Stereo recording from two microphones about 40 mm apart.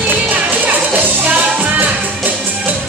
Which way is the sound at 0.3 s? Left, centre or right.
Right.